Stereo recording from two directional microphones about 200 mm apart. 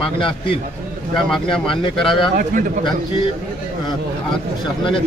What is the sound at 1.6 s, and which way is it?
Speech, 25° left (ahead or behind).